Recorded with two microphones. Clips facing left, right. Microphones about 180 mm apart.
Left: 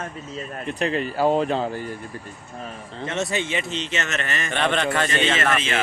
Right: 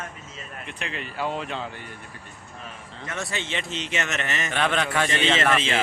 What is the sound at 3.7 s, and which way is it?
Speech, 10° right (ahead or behind).